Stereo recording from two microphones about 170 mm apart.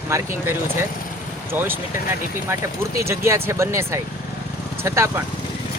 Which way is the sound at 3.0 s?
15° right (ahead or behind).